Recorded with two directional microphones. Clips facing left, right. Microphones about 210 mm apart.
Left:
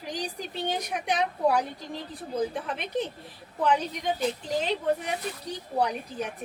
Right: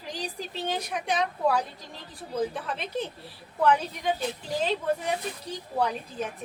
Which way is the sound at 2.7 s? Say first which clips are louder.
Left 2 dB; 15° left (ahead or behind).